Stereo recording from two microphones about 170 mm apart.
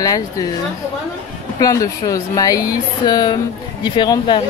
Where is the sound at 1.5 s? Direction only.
20° left (ahead or behind).